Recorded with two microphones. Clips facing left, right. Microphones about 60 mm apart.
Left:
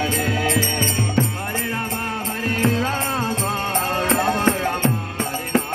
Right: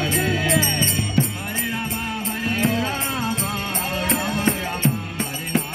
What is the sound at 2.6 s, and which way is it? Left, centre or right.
Music, left.